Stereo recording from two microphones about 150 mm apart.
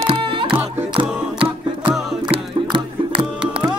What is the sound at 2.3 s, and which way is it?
Music, 35° right (ahead or behind).